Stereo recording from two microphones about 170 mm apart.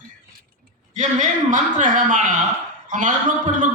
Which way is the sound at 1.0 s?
45° right (ahead or behind).